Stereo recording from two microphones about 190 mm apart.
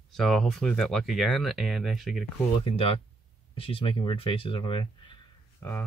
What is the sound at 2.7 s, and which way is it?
Speech, 30° left (ahead or behind).